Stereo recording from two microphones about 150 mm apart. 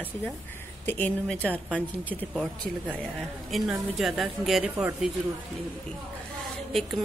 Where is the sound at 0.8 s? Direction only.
10° left (ahead or behind).